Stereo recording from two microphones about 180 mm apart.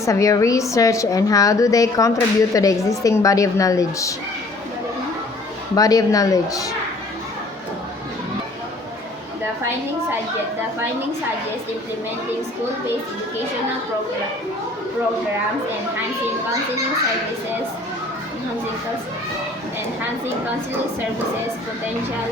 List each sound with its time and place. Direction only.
0.0 s a woman's voice: 15° left (ahead or behind)
5.7 s speech: 20° left (ahead or behind)